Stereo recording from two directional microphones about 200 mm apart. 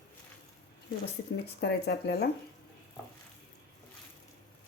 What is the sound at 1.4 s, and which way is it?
Speech, 55° left (ahead or behind).